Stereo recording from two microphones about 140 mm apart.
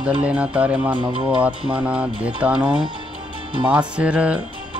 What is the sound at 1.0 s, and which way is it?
Speech, 35° right (ahead or behind).